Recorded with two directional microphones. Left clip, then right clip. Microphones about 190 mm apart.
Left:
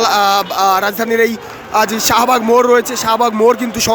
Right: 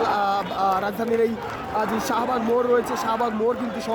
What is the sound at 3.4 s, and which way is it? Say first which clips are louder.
Speech: left 12 dB; 25° left (ahead or behind).